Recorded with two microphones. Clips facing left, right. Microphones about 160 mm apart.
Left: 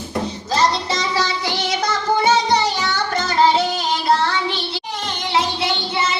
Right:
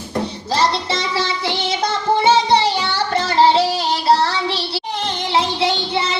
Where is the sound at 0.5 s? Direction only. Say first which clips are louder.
Even; 30° right (ahead or behind).